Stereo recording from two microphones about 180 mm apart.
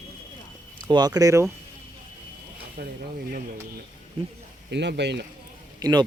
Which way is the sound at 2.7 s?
60° right (ahead or behind).